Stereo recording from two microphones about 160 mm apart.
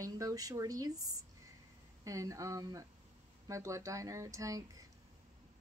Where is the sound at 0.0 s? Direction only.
20° right (ahead or behind).